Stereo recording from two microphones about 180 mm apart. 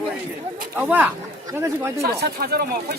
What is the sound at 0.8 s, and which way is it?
Speech, 5° right (ahead or behind).